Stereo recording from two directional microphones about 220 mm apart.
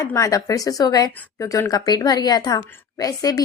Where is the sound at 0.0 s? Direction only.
15° left (ahead or behind).